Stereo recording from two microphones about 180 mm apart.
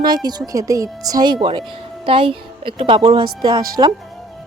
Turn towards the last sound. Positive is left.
turn(degrees=-20)  # may be behind; listen again after turning